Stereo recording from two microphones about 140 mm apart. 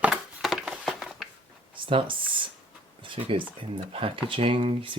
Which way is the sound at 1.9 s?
40° right (ahead or behind).